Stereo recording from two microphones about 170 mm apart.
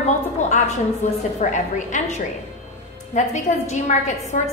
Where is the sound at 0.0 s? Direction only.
45° left (ahead or behind).